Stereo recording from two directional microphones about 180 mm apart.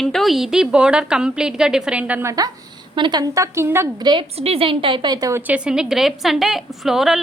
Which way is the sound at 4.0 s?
25° right (ahead or behind).